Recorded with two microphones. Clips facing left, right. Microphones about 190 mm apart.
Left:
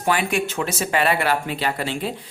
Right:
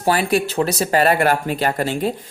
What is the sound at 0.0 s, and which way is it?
Speech, 35° right (ahead or behind).